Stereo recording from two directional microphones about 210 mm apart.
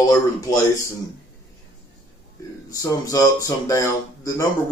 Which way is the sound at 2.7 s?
15° left (ahead or behind).